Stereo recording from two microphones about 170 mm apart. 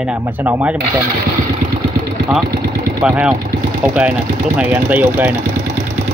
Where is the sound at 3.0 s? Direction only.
5° right (ahead or behind).